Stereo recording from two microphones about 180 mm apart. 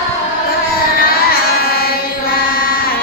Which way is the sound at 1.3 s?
55° left (ahead or behind).